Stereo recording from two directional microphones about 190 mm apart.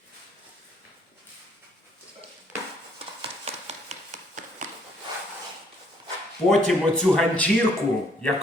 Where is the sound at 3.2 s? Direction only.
35° right (ahead or behind).